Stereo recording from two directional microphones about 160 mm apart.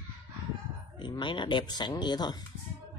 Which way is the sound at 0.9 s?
30° left (ahead or behind).